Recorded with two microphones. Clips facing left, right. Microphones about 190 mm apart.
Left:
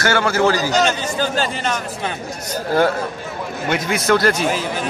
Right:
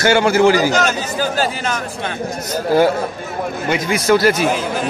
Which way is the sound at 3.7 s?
Centre (ahead or behind).